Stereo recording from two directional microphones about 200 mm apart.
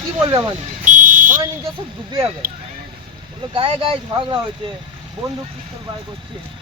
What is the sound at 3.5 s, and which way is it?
Speech, 25° right (ahead or behind).